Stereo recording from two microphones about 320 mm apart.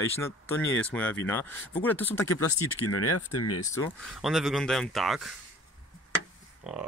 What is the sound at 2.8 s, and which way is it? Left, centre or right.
Speech, left.